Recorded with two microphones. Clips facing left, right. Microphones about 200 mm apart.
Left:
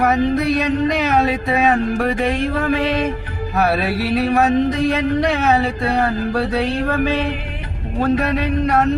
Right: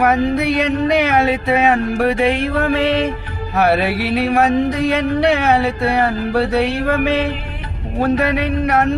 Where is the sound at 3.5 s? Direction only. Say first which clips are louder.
Right 3 dB; 65° right (ahead or behind).